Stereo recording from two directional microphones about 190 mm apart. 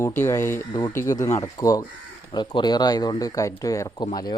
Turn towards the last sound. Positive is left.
turn(degrees=20)  # may be behind; listen again after turning